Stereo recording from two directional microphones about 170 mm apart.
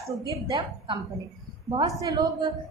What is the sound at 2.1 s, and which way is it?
Speech, 25° right (ahead or behind).